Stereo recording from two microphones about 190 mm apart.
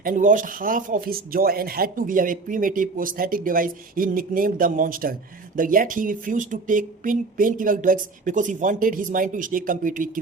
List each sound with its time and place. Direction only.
0.0 s speech: 45° right (ahead or behind)